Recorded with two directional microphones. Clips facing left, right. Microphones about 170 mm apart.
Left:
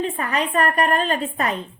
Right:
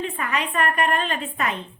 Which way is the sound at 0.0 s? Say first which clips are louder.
Left 3 dB; 35° left (ahead or behind).